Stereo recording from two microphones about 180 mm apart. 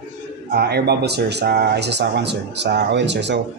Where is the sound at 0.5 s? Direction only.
60° right (ahead or behind).